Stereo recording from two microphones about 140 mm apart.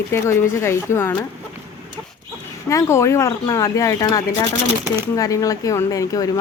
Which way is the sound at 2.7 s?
20° left (ahead or behind).